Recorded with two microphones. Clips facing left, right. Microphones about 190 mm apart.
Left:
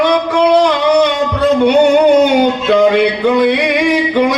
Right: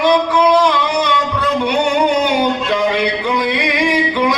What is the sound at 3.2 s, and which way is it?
Music, 50° left (ahead or behind).